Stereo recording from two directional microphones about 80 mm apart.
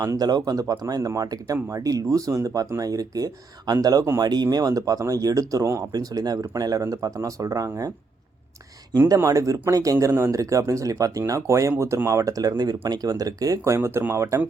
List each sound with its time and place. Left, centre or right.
0.0 s speech: right
4.5 s speech: right
9.0 s speech: right
13.7 s speech: right